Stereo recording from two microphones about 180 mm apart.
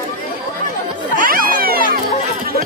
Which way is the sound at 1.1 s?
50° right (ahead or behind).